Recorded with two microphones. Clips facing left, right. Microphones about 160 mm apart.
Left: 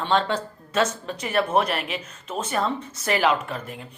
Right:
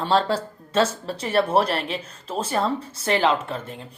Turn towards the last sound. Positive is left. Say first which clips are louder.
# right 1 dB
turn(degrees=-30)  # may be behind; listen again after turning